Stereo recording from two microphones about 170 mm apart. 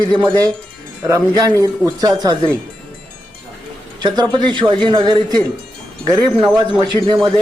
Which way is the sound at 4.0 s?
25° right (ahead or behind).